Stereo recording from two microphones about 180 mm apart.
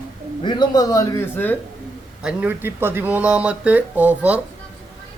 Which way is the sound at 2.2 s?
5° right (ahead or behind).